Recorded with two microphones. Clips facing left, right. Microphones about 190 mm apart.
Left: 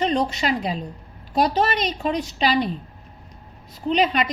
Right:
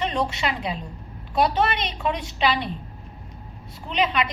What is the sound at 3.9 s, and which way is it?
Speech, 40° left (ahead or behind).